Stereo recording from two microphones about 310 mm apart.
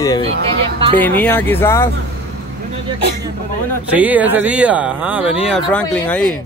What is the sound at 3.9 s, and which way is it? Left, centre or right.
Speech, centre.